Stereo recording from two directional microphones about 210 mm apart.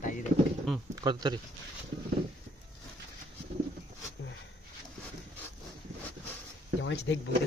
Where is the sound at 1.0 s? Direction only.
20° right (ahead or behind).